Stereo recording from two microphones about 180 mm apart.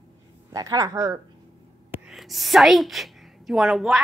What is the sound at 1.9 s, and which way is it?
A woman's voice, 5° right (ahead or behind).